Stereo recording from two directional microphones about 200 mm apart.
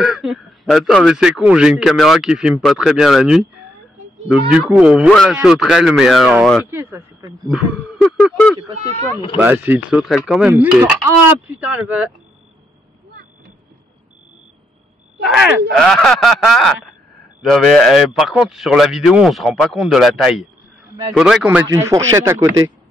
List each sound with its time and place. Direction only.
0.0 s a man's voice: centre (ahead or behind)
6.7 s speech: 15° right (ahead or behind)
7.5 s a man's voice: centre (ahead or behind)
8.8 s speech: 35° right (ahead or behind)
9.4 s speech: 10° right (ahead or behind)
15.7 s a man's voice: 5° left (ahead or behind)
21.6 s speech: 15° right (ahead or behind)